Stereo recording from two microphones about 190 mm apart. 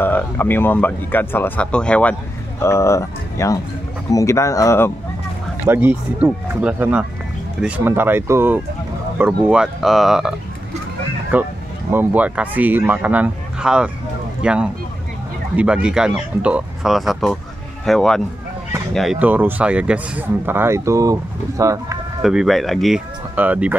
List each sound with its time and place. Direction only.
0.0 s speech: 10° left (ahead or behind)
5.7 s speech: 10° right (ahead or behind)
11.3 s a sound: 10° right (ahead or behind)
11.9 s speech: 10° right (ahead or behind)
22.2 s speech: centre (ahead or behind)